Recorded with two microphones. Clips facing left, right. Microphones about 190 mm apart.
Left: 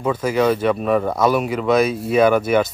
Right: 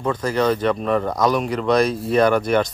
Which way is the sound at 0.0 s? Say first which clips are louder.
Left 2 dB; 10° left (ahead or behind).